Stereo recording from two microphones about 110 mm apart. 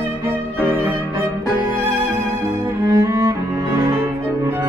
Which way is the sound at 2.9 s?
35° right (ahead or behind).